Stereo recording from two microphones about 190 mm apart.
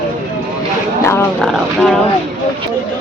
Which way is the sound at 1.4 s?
Centre (ahead or behind).